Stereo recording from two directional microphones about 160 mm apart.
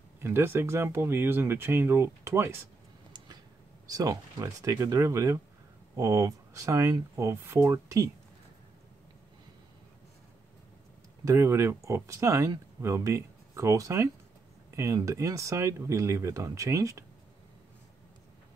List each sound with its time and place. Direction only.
0.2 s speech: 15° right (ahead or behind)
3.9 s speech: 20° right (ahead or behind)
11.2 s speech: 20° right (ahead or behind)